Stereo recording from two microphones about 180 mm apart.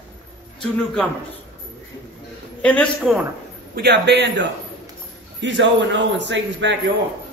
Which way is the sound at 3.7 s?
70° right (ahead or behind).